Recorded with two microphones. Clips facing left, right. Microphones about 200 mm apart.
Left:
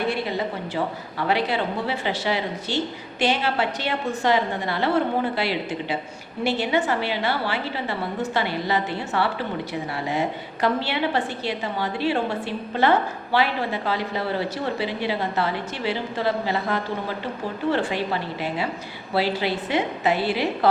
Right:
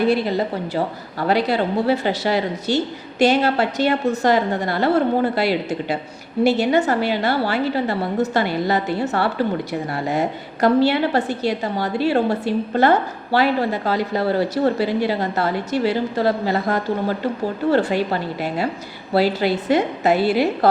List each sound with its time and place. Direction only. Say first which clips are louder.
0.1 s a woman's voice: right 6 dB; 40° right (ahead or behind)